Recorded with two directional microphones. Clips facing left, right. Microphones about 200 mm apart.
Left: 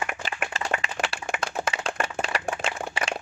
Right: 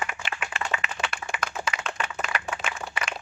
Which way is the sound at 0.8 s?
30° left (ahead or behind).